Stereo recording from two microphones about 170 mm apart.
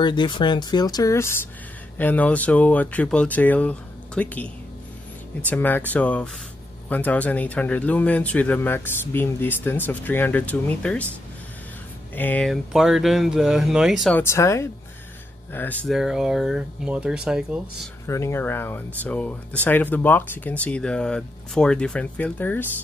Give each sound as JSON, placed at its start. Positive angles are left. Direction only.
{"t": 0.0, "sound": "speech", "side_deg": 25}
{"t": 5.5, "sound": "speech", "side_deg": 10}
{"t": 12.2, "sound": "speech", "side_deg": 10}
{"t": 14.1, "sound": "speech", "side_deg": 15}
{"t": 18.0, "sound": "speech", "side_deg": 15}